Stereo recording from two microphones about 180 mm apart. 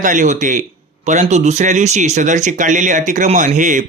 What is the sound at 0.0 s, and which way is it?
A man's voice, 45° right (ahead or behind).